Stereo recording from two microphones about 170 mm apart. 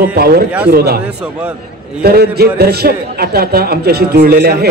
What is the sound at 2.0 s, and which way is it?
A man's voice, 65° right (ahead or behind).